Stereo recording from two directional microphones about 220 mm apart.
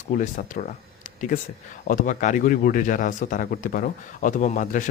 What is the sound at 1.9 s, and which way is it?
Speech, 35° left (ahead or behind).